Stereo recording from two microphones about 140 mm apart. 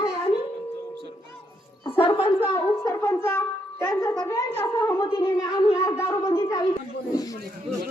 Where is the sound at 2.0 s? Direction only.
40° left (ahead or behind).